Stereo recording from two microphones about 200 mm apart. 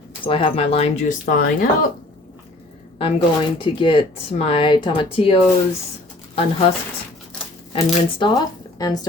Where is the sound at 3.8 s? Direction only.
25° left (ahead or behind).